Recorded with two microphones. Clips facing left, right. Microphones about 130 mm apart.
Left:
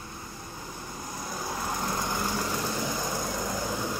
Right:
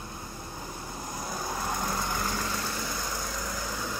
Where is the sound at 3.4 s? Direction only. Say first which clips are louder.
Left 4 dB; 30° left (ahead or behind).